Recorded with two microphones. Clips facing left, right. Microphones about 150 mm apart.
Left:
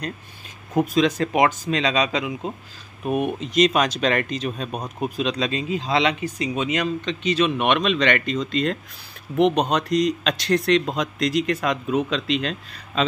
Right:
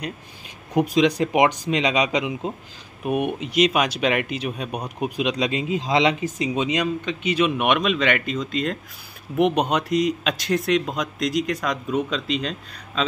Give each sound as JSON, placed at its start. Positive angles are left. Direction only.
{"t": 0.7, "sound": "speech", "side_deg": -15}